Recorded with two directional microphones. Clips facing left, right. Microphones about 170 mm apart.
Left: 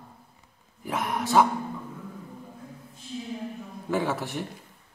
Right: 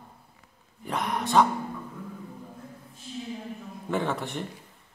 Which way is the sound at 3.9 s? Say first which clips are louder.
Left 1 dB; centre (ahead or behind).